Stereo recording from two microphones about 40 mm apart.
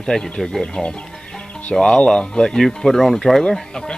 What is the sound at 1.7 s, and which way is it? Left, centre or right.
Speech, centre.